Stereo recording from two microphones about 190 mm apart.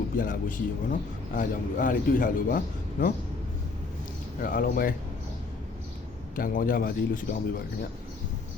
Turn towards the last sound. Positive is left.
turn(degrees=45)  # may be behind; listen again after turning